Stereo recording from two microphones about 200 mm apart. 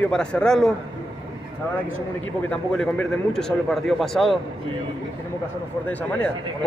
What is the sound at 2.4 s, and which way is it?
A man's voice, 5° left (ahead or behind).